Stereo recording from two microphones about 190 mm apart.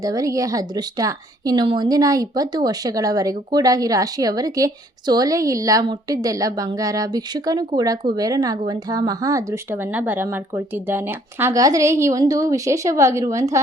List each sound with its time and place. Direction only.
0.0 s speech: 20° right (ahead or behind)